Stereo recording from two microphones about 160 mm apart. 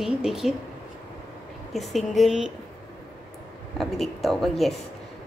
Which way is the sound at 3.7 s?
Centre (ahead or behind).